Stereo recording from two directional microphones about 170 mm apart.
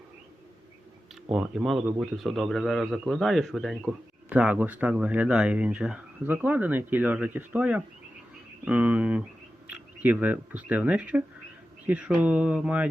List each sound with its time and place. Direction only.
1.3 s a man's voice: centre (ahead or behind)